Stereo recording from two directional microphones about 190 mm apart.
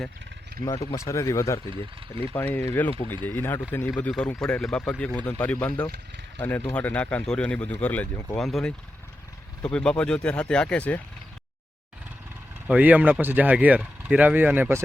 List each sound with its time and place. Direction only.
0.6 s speech: 20° left (ahead or behind)
12.6 s speech: 5° right (ahead or behind)